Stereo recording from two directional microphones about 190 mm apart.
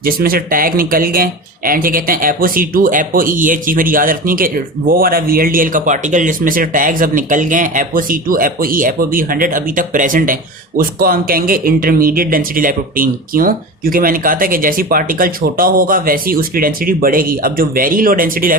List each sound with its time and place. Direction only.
0.0 s speech: 50° right (ahead or behind)